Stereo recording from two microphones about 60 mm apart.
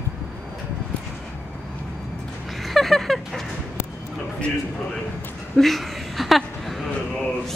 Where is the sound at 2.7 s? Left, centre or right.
Centre.